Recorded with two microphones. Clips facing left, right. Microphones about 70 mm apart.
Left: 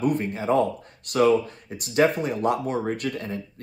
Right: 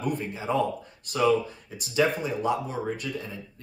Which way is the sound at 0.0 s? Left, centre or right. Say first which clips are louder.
Left 6 dB; left.